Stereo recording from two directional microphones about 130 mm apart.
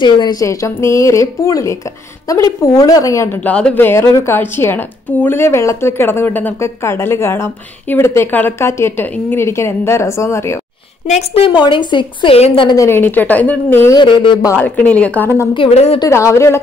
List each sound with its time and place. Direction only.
0.0 s a woman's voice: 35° left (ahead or behind)
3.4 s a woman's voice: 10° left (ahead or behind)
11.1 s a woman's voice: 50° left (ahead or behind)
12.4 s a woman's voice: 50° left (ahead or behind)
12.6 s a woman's voice: 25° left (ahead or behind)
13.9 s a woman's voice: 40° left (ahead or behind)
14.6 s a woman's voice: 10° left (ahead or behind)
15.7 s a woman's voice: 55° left (ahead or behind)
16.1 s a woman's voice: 20° left (ahead or behind)